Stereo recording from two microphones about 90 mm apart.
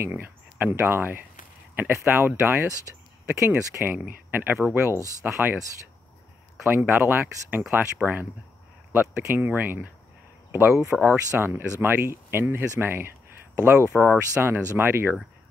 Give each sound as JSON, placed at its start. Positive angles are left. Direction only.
{"t": 0.0, "sound": "speech", "side_deg": -20}
{"t": 6.6, "sound": "speech", "side_deg": -25}
{"t": 10.7, "sound": "speech", "side_deg": -5}
{"t": 11.0, "sound": "speech", "side_deg": 30}
{"t": 11.3, "sound": "speech", "side_deg": -25}